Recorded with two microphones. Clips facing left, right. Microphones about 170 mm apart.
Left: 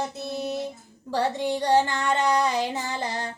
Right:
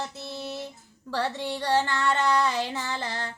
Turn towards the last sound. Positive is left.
turn(degrees=15)  # may be behind; listen again after turning